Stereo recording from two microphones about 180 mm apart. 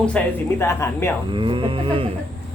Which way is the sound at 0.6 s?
15° left (ahead or behind).